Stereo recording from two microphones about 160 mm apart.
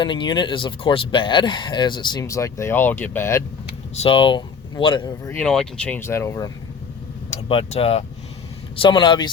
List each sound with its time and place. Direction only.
0.0 s speech: 30° left (ahead or behind)
3.9 s speech: 35° left (ahead or behind)
5.4 s speech: 5° left (ahead or behind)
7.4 s speech: 35° left (ahead or behind)